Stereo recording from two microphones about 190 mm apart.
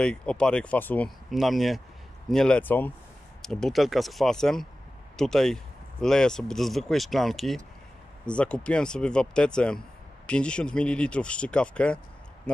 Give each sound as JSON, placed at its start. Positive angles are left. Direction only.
{"t": 0.0, "sound": "speech", "side_deg": 5}